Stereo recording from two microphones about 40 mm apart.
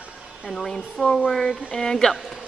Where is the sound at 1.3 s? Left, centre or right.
Centre.